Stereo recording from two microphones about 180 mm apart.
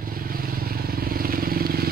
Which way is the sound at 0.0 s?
55° right (ahead or behind).